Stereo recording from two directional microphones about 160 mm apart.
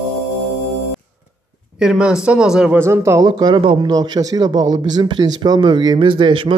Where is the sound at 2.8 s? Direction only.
15° right (ahead or behind).